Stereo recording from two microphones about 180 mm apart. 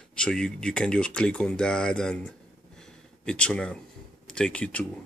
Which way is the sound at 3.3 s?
5° left (ahead or behind).